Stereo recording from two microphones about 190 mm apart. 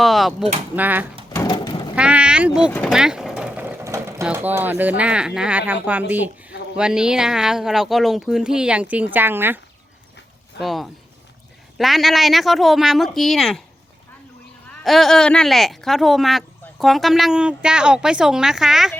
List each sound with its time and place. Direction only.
0.0 s speech: centre (ahead or behind)
1.3 s a sound: 15° left (ahead or behind)
1.5 s mechanisms: 25° left (ahead or behind)
2.0 s vehicle: 5° right (ahead or behind)
2.9 s speech: 5° right (ahead or behind)
10.6 s speech: centre (ahead or behind)
14.7 s speech: centre (ahead or behind)